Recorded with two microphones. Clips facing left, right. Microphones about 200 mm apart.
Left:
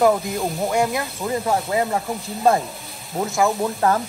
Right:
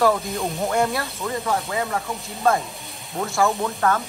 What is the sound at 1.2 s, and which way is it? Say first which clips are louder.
Speech: left 4 dB; 30° left (ahead or behind).